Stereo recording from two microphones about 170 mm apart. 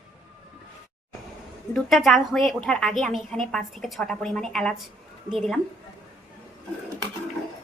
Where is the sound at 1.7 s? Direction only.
Centre (ahead or behind).